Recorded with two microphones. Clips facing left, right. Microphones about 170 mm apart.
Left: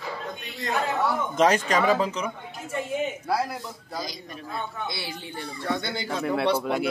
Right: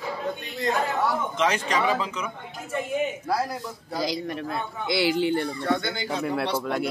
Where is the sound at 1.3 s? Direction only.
45° left (ahead or behind).